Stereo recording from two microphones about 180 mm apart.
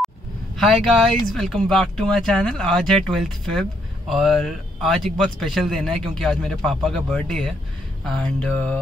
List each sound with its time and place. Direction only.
0.6 s a man's voice: centre (ahead or behind)